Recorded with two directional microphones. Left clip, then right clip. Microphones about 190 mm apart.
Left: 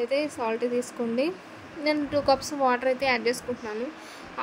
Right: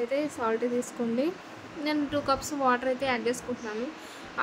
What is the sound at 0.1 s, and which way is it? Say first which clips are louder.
A woman's voice: left 2 dB; 20° left (ahead or behind).